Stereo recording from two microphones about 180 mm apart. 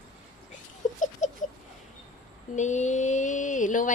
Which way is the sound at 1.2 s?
40° left (ahead or behind).